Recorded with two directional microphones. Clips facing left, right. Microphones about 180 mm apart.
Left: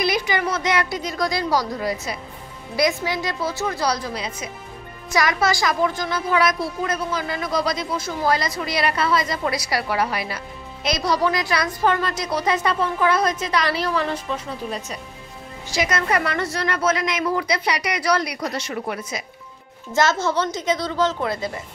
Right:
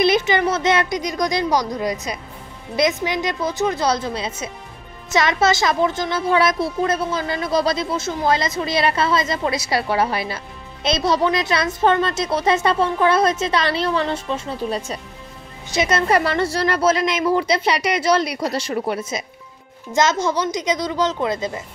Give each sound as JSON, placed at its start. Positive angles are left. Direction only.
{"t": 0.0, "sound": "a woman's voice", "side_deg": -25}